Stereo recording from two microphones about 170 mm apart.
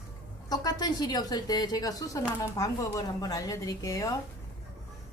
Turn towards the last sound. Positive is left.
turn(degrees=20)  # may be behind; listen again after turning